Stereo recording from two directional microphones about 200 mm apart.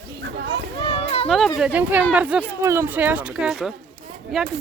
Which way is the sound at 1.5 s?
5° right (ahead or behind).